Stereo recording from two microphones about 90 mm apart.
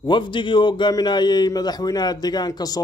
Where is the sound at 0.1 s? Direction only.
60° left (ahead or behind).